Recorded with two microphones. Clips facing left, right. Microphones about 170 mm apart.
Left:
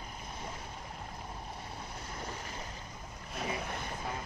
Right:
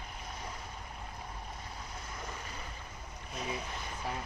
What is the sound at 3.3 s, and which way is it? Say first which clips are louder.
Boat: left 2 dB; 55° left (ahead or behind).